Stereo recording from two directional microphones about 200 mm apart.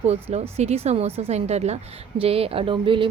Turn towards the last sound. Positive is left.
turn(degrees=-25)  # may be behind; listen again after turning